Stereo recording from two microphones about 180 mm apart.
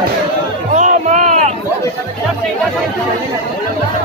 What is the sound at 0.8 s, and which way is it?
Music, 45° right (ahead or behind).